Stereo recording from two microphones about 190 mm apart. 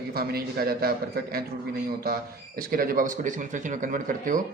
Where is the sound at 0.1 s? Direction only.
55° right (ahead or behind).